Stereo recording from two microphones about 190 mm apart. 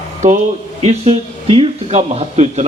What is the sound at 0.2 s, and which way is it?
A man's voice, 45° right (ahead or behind).